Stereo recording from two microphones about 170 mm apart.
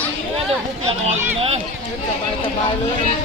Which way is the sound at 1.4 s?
35° right (ahead or behind).